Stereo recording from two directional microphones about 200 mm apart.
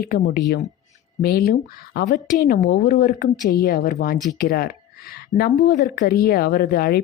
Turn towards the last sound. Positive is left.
turn(degrees=50)  # may be behind; listen again after turning